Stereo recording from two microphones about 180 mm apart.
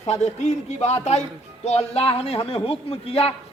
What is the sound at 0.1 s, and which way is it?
A man's voice, 40° left (ahead or behind).